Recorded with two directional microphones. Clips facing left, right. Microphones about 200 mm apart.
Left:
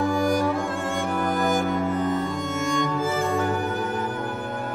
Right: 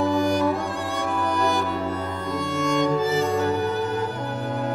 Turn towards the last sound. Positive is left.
turn(degrees=50)  # may be behind; listen again after turning